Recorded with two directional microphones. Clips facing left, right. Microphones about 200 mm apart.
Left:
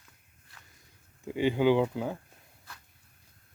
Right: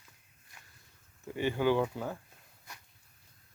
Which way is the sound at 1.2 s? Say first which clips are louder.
Left 4 dB; 15° left (ahead or behind).